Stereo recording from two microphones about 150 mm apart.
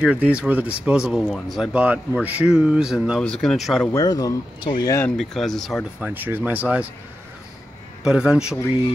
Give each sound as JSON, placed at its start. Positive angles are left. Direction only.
{"t": 0.0, "sound": "speech", "side_deg": -10}
{"t": 1.7, "sound": "speech", "side_deg": -10}
{"t": 3.9, "sound": "speech", "side_deg": 25}
{"t": 5.1, "sound": "speech", "side_deg": 5}
{"t": 6.0, "sound": "speech", "side_deg": -10}
{"t": 8.0, "sound": "speech", "side_deg": -5}